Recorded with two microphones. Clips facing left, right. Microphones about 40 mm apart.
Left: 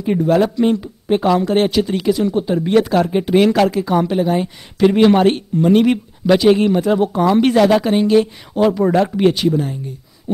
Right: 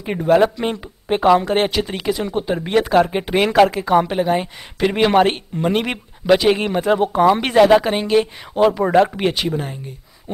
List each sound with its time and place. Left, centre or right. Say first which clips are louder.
0.0 s speech: even; centre